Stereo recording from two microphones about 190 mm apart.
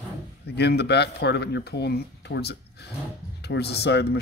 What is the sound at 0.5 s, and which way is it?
Speech, 60° left (ahead or behind).